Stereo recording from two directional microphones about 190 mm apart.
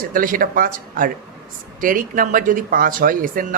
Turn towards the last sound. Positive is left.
turn(degrees=-45)  # may be behind; listen again after turning